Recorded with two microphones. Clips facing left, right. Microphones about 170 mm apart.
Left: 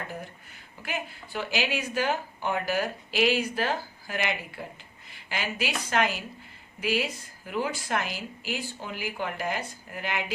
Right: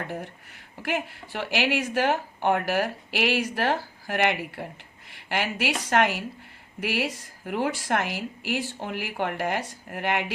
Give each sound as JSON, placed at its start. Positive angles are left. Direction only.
{"t": 0.8, "sound": "speech", "side_deg": -75}